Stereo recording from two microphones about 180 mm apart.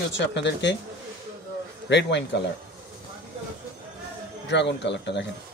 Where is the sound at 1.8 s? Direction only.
75° left (ahead or behind).